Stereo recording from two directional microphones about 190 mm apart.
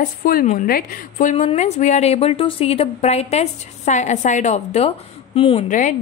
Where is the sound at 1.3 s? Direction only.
35° left (ahead or behind).